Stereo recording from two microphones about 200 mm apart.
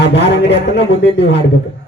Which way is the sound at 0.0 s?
60° left (ahead or behind).